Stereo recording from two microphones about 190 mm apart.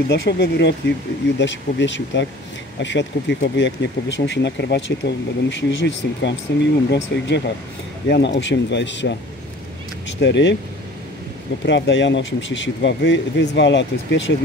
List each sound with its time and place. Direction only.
0.1 s speech: 65° left (ahead or behind)
11.6 s speech: 70° left (ahead or behind)